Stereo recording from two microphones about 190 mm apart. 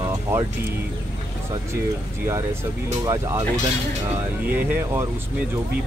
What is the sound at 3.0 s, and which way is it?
Speech, 15° right (ahead or behind).